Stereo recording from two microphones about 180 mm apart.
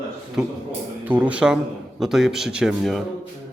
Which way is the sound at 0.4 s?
5° right (ahead or behind).